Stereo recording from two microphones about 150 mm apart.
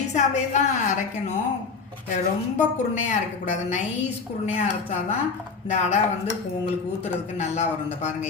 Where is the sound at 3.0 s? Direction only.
50° left (ahead or behind).